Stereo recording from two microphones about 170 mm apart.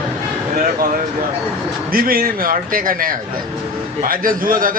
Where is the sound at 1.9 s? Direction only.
60° right (ahead or behind).